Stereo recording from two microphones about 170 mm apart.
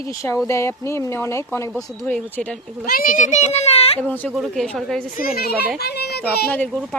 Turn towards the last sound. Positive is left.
turn(degrees=5)  # may be behind; listen again after turning